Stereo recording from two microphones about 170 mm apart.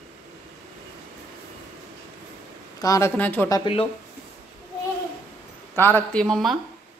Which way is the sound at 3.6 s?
35° left (ahead or behind).